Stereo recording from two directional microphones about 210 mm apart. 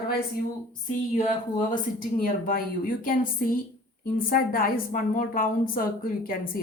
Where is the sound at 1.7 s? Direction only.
40° left (ahead or behind).